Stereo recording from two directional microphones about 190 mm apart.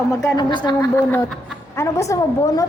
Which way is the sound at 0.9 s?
10° left (ahead or behind).